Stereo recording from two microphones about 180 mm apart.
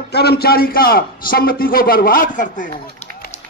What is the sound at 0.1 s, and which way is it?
A man's voice, 65° left (ahead or behind).